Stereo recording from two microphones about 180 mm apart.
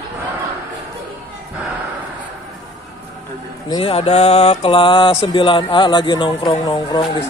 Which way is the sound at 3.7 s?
30° left (ahead or behind).